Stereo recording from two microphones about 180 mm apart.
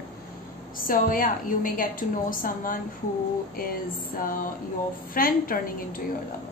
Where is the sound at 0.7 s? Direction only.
50° left (ahead or behind).